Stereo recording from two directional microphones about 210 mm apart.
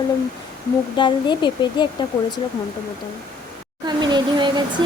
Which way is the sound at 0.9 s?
20° left (ahead or behind).